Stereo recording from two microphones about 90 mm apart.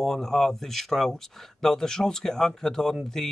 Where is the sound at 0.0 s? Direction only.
5° left (ahead or behind).